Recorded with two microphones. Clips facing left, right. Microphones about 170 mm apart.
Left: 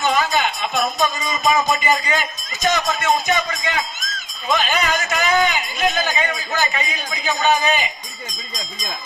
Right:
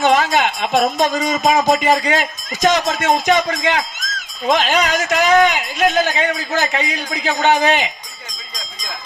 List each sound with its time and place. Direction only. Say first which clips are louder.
0.0 s speech: right 4 dB; 90° right
4.4 s speech: right 4 dB; 80° right